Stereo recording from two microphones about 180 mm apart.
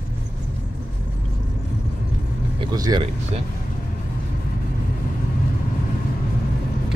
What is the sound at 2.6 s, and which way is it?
Speech, 25° right (ahead or behind).